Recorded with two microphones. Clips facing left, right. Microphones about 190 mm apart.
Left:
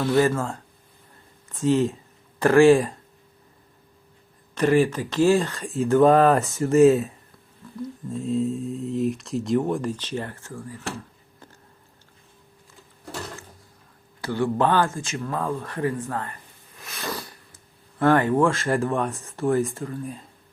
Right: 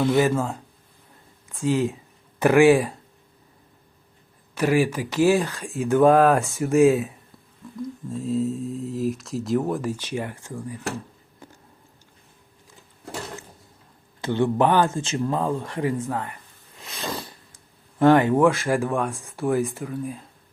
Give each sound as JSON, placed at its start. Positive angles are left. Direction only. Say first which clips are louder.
{"t": 0.0, "sound": "speech", "louder": "right 1 dB", "side_deg": -15}
{"t": 2.4, "sound": "speech", "louder": "left 1 dB", "side_deg": -15}
{"t": 4.5, "sound": "speech", "louder": "left 1 dB", "side_deg": -10}
{"t": 8.1, "sound": "speech", "louder": "even", "side_deg": 0}
{"t": 11.4, "sound": "a sound", "louder": "right 3 dB", "side_deg": -10}
{"t": 14.2, "sound": "speech", "louder": "right 2 dB", "side_deg": -20}
{"t": 18.9, "sound": "speech", "louder": "even", "side_deg": 0}